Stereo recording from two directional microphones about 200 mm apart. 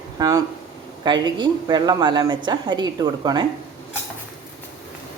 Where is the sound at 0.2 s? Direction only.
20° right (ahead or behind).